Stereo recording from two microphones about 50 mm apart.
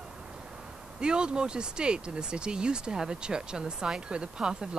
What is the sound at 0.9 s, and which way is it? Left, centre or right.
Speech, centre.